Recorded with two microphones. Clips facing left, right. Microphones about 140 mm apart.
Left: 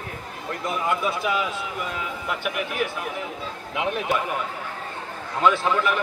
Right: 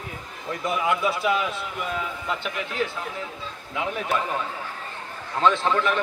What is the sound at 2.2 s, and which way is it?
A man's voice, 10° left (ahead or behind).